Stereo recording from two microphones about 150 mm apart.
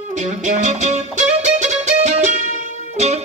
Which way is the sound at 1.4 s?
50° right (ahead or behind).